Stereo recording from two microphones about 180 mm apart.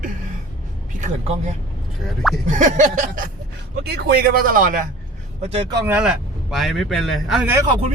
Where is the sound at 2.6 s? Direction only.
45° right (ahead or behind).